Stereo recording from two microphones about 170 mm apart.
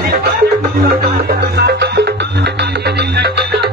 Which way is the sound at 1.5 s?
75° right (ahead or behind).